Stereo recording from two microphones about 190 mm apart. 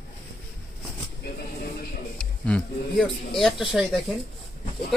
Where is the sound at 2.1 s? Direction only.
5° left (ahead or behind).